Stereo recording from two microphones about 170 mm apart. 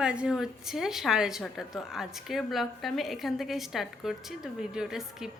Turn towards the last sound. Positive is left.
turn(degrees=-5)  # may be behind; listen again after turning